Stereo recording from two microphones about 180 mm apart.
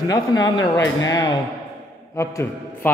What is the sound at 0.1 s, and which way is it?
A man's voice, 20° left (ahead or behind).